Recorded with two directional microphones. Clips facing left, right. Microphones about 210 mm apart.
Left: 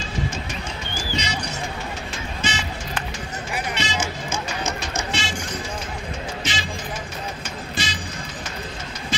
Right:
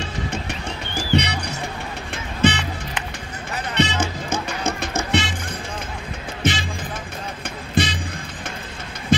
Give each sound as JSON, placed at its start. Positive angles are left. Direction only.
{"t": 0.0, "sound": "music", "side_deg": -65}
{"t": 2.4, "sound": "music", "side_deg": -60}
{"t": 3.7, "sound": "music", "side_deg": -60}
{"t": 7.7, "sound": "music", "side_deg": -55}